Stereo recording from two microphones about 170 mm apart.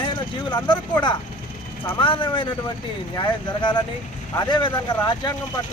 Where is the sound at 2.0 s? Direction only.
30° left (ahead or behind).